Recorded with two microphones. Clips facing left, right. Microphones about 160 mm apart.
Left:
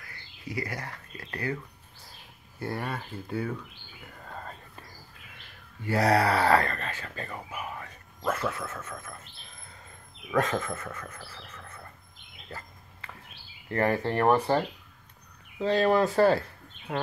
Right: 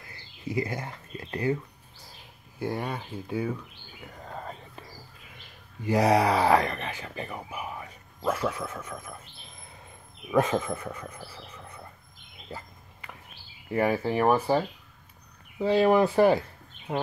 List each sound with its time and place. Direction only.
0.0 s speech: 25° right (ahead or behind)
2.6 s speech: 15° right (ahead or behind)
4.2 s whispering: 15° right (ahead or behind)
5.8 s speech: 15° right (ahead or behind)
12.4 s a sound: 15° right (ahead or behind)
13.7 s speech: 5° right (ahead or behind)